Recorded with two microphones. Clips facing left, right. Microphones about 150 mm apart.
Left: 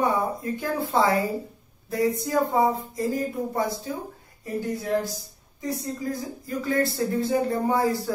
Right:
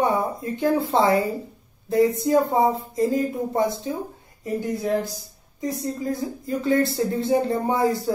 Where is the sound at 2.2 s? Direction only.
20° right (ahead or behind).